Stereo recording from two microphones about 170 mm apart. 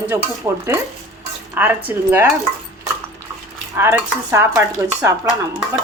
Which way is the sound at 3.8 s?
15° right (ahead or behind).